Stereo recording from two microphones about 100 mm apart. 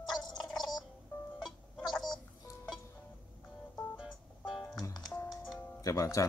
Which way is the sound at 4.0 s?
5° right (ahead or behind).